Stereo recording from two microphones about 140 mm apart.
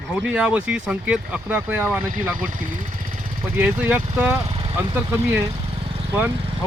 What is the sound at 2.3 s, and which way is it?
Speech, 75° right (ahead or behind).